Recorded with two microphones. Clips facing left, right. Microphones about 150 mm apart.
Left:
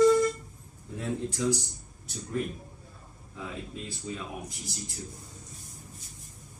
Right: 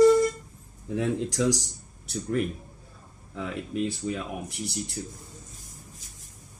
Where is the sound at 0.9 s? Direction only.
90° right; by 4.9 s 70° right (ahead or behind).